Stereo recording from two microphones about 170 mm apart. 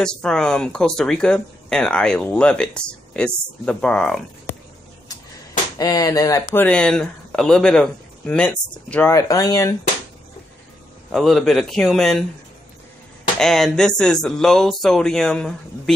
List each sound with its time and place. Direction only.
0.0 s speech: 5° left (ahead or behind)
5.8 s speech: 20° left (ahead or behind)
6.5 s speech: 10° left (ahead or behind)
11.1 s speech: centre (ahead or behind)
13.4 s speech: centre (ahead or behind)